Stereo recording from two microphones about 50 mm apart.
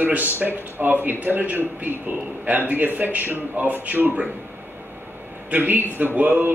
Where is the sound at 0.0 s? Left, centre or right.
Right.